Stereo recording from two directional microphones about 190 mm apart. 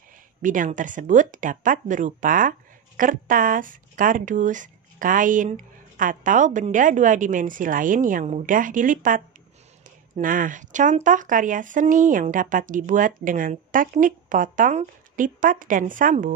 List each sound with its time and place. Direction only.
0.4 s speech: 45° right (ahead or behind)